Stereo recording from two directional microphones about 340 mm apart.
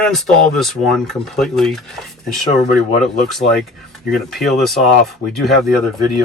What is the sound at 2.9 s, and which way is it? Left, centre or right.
Speech, left.